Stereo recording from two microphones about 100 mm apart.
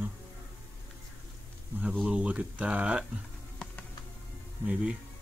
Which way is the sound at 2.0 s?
10° right (ahead or behind).